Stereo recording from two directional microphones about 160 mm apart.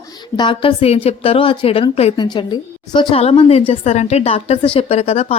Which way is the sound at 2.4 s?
30° left (ahead or behind).